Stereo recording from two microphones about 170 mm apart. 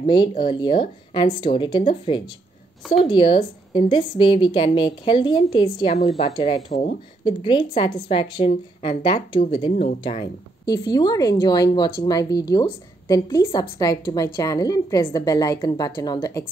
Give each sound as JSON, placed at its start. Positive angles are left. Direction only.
{"t": 0.0, "sound": "a woman's voice", "side_deg": 25}
{"t": 5.9, "sound": "speech", "side_deg": 40}
{"t": 7.2, "sound": "a woman's voice", "side_deg": 30}
{"t": 9.7, "sound": "speech", "side_deg": 45}
{"t": 10.6, "sound": "a woman's voice", "side_deg": 25}